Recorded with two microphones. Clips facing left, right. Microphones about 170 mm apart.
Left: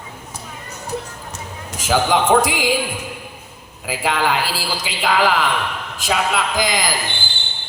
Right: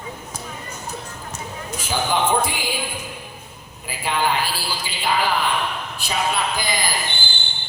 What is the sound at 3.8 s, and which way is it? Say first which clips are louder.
A man's voice: left 3 dB; 90° left.